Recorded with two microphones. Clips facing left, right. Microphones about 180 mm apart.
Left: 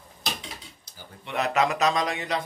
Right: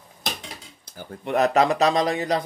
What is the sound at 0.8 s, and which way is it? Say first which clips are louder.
Speech: right 10 dB; 50° right (ahead or behind).